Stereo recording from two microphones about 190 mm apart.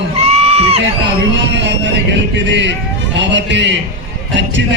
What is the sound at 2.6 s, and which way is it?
A man's voice, 70° right (ahead or behind).